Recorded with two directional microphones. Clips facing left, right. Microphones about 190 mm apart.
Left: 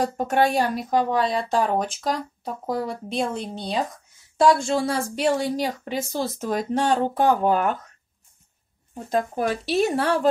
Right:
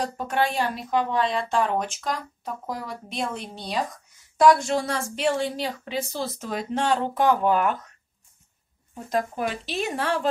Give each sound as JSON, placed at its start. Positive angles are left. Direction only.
{"t": 0.0, "sound": "a woman's voice", "side_deg": 45}
{"t": 4.4, "sound": "a woman's voice", "side_deg": 30}
{"t": 9.3, "sound": "a woman's voice", "side_deg": 40}